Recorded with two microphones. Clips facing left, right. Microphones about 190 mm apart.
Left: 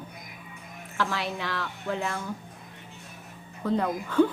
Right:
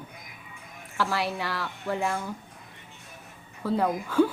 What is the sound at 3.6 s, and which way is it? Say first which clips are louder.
Speech: right 1 dB; 5° right (ahead or behind).